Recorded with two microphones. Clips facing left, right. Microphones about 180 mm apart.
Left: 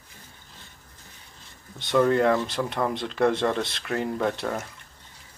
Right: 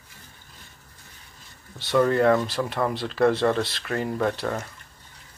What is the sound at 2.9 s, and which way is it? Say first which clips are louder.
Speech: right 3 dB; 20° left (ahead or behind).